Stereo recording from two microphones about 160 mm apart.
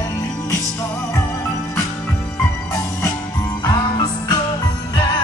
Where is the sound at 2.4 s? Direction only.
20° left (ahead or behind).